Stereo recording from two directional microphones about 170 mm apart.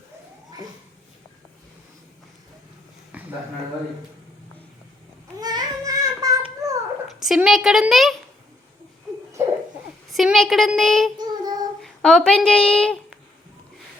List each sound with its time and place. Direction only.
3.1 s a sound: 10° right (ahead or behind)
5.4 s child singing: 25° right (ahead or behind)
7.1 s a woman's voice: centre (ahead or behind)
9.4 s hoot: 15° right (ahead or behind)
10.1 s a sound: centre (ahead or behind)
11.2 s child singing: 25° right (ahead or behind)
11.8 s speech: 5° left (ahead or behind)